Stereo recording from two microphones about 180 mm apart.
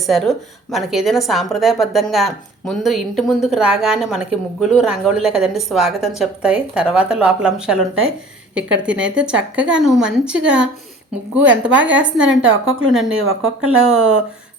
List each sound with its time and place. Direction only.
0.0 s a woman's voice: centre (ahead or behind)
8.8 s a woman's voice: 5° right (ahead or behind)
12.3 s a woman's voice: 90° right
12.9 s a woman's voice: 5° right (ahead or behind)